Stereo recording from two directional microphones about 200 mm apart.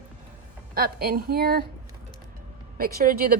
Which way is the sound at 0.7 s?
50° right (ahead or behind).